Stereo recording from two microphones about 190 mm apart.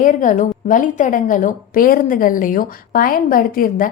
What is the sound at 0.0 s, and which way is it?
A woman's voice, 45° left (ahead or behind).